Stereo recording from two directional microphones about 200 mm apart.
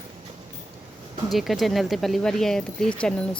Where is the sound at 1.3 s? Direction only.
Centre (ahead or behind).